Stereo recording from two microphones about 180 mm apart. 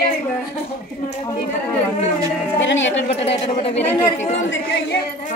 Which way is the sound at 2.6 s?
90° left.